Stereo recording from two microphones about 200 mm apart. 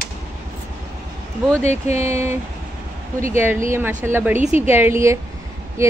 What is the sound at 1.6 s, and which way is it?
Speech, 35° left (ahead or behind).